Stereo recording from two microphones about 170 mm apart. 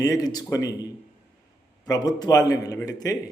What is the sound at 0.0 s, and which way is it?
Speech, 20° left (ahead or behind).